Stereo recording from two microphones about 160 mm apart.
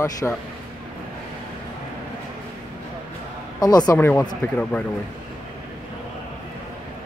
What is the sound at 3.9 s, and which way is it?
Speech, 10° left (ahead or behind).